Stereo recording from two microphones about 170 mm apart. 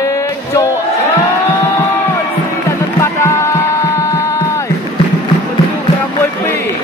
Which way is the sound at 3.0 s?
15° left (ahead or behind).